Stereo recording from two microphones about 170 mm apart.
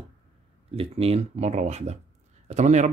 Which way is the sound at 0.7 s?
35° right (ahead or behind).